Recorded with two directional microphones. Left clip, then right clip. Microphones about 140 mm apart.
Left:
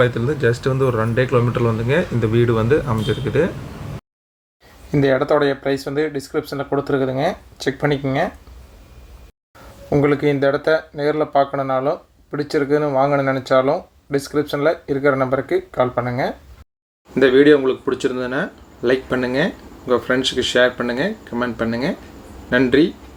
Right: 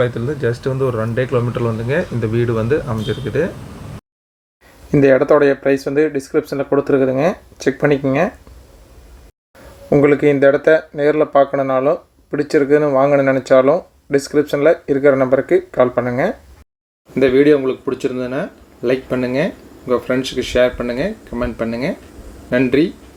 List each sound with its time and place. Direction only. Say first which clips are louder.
0.0 s a man's voice: left 1 dB; 10° right (ahead or behind)
4.9 s speech: right 5 dB; 35° right (ahead or behind)
9.9 s speech: right 5 dB; 25° right (ahead or behind)
17.2 s a man's voice: even; 10° right (ahead or behind)